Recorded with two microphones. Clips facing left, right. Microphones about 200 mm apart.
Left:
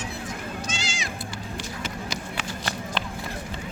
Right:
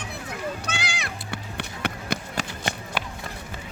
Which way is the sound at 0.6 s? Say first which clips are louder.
Even; 60° right (ahead or behind).